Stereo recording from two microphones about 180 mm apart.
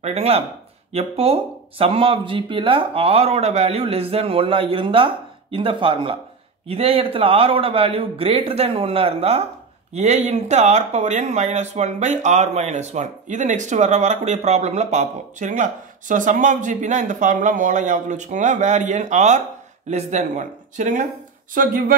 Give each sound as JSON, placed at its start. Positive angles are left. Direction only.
{"t": 0.0, "sound": "speech", "side_deg": -35}